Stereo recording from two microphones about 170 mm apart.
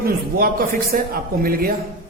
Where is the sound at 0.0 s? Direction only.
60° right (ahead or behind).